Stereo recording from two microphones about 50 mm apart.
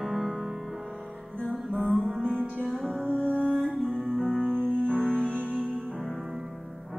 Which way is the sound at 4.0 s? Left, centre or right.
Centre.